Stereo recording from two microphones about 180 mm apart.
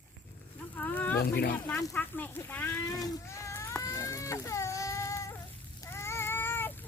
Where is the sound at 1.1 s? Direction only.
60° left (ahead or behind).